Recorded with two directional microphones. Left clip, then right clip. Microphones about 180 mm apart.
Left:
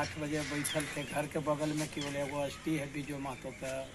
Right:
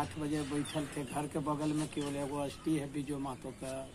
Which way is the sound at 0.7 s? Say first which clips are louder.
Left 3 dB; 15° right (ahead or behind).